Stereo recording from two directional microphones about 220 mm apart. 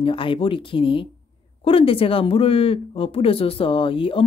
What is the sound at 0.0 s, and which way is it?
Speech, 25° left (ahead or behind).